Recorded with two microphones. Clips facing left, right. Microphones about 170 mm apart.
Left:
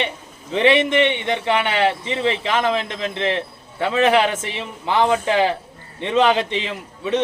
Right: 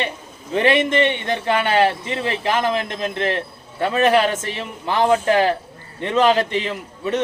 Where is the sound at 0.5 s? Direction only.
20° left (ahead or behind).